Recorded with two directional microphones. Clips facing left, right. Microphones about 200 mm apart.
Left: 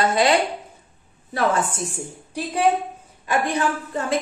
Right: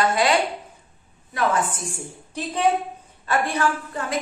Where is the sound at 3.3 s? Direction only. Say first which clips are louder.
Left 1 dB; 20° left (ahead or behind).